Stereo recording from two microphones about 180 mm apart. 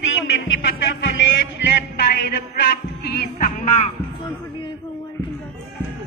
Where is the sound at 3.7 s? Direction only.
30° left (ahead or behind).